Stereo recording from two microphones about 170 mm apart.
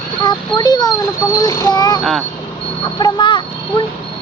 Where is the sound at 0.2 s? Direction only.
25° left (ahead or behind).